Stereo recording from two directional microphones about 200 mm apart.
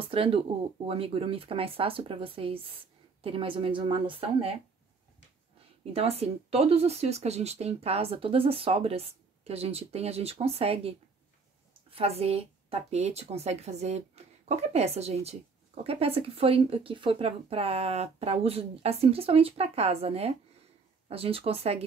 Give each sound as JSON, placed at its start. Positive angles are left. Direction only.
{"t": 0.1, "sound": "speech", "side_deg": -25}
{"t": 5.9, "sound": "speech", "side_deg": -30}